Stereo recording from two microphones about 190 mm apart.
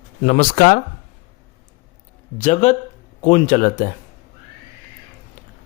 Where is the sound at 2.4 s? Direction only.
40° left (ahead or behind).